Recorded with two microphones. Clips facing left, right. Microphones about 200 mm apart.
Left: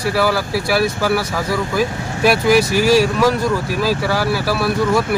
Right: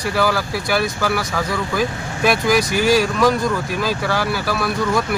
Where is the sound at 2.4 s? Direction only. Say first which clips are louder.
Left 4 dB; 30° left (ahead or behind).